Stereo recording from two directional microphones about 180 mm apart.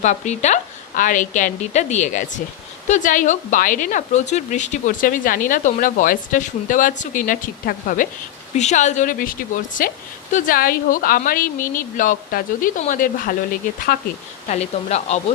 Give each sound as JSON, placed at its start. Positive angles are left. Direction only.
{"t": 0.0, "sound": "a woman's voice", "side_deg": 40}
{"t": 8.5, "sound": "speech", "side_deg": 40}
{"t": 10.3, "sound": "speech", "side_deg": 50}
{"t": 13.9, "sound": "speech", "side_deg": 60}
{"t": 14.4, "sound": "a woman's voice", "side_deg": 40}